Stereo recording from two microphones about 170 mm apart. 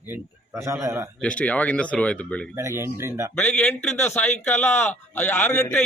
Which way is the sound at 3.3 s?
5° left (ahead or behind).